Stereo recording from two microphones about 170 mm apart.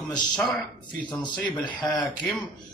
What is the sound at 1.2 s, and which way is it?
Speech, 25° left (ahead or behind).